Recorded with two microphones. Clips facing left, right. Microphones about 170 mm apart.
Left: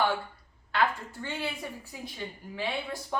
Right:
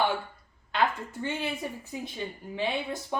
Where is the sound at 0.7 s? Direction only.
20° right (ahead or behind).